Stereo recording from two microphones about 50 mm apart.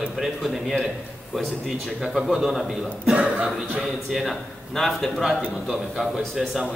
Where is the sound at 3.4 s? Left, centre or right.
Centre.